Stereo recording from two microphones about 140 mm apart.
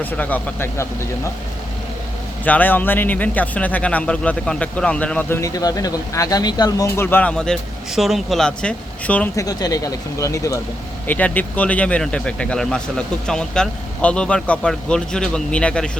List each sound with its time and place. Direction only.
0.0 s speech: 10° left (ahead or behind)
2.4 s speech: 10° left (ahead or behind)
5.4 s speech: 25° left (ahead or behind); by 9.3 s 10° left (ahead or behind)
9.3 s speech: 25° left (ahead or behind)
11.0 s speech: 10° left (ahead or behind)